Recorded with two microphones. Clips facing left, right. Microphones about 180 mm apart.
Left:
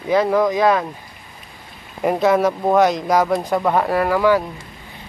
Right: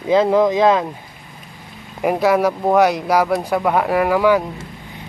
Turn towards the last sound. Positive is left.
turn(degrees=-15)  # may be behind; listen again after turning